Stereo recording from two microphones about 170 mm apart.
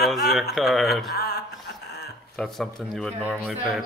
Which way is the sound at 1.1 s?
65° left (ahead or behind).